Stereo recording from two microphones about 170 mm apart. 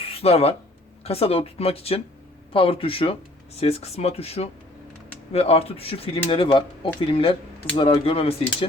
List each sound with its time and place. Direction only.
0.1 s speech: 35° left (ahead or behind)